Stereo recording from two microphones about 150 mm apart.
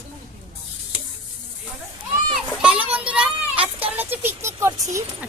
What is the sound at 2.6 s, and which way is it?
Children playing, 5° right (ahead or behind).